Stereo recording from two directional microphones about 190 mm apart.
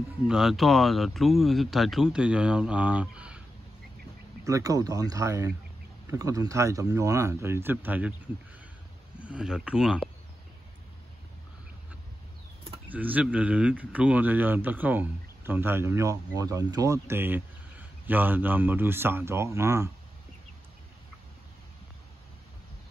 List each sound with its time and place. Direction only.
0.3 s speech: centre (ahead or behind)
4.5 s speech: 15° right (ahead or behind)
9.2 s speech: 5° right (ahead or behind)
12.8 s speech: 10° right (ahead or behind)